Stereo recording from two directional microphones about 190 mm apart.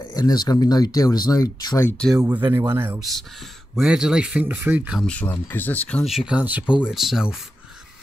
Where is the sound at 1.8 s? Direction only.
5° left (ahead or behind).